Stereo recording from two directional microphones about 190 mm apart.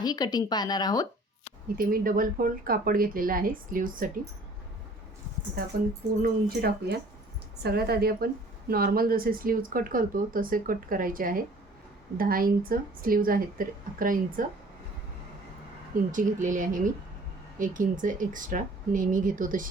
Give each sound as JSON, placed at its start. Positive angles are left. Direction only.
{"t": 0.0, "sound": "speech", "side_deg": 20}
{"t": 1.8, "sound": "a woman's voice", "side_deg": -50}
{"t": 6.2, "sound": "a woman's voice", "side_deg": -55}
{"t": 16.1, "sound": "a woman's voice", "side_deg": -45}